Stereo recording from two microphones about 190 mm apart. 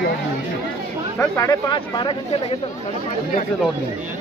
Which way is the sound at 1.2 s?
15° left (ahead or behind).